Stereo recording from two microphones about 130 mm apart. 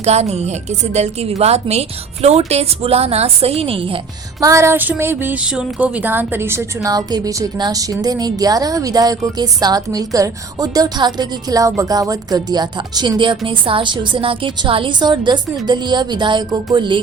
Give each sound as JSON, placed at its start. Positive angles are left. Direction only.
{"t": 0.0, "sound": "a woman's voice", "side_deg": -55}
{"t": 4.4, "sound": "a woman's voice", "side_deg": -25}